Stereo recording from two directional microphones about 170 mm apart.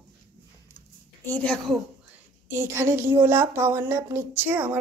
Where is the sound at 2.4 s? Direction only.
15° right (ahead or behind).